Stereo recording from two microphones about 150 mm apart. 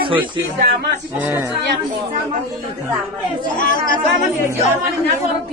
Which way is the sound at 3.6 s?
65° left (ahead or behind).